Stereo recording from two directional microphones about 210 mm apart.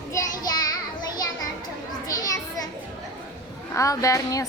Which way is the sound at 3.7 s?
15° left (ahead or behind).